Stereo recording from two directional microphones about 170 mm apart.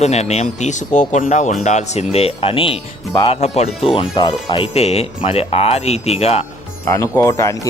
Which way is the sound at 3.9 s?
25° left (ahead or behind).